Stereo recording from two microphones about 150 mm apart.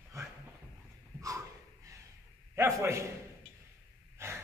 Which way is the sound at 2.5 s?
20° right (ahead or behind).